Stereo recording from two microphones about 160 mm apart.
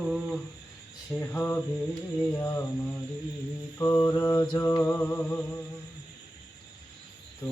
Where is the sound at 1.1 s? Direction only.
10° left (ahead or behind).